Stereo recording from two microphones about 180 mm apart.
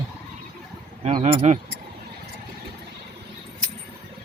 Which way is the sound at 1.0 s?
35° right (ahead or behind).